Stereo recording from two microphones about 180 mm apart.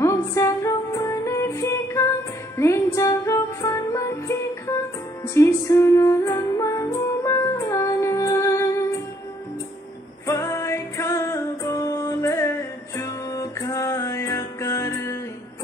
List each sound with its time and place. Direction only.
0.0 s music: 15° left (ahead or behind)
10.2 s music: 15° left (ahead or behind)